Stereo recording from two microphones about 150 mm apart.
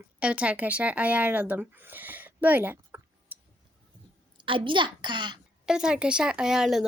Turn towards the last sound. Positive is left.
turn(degrees=-5)  # may be behind; listen again after turning